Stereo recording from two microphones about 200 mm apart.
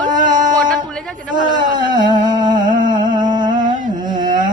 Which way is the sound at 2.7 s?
40° right (ahead or behind).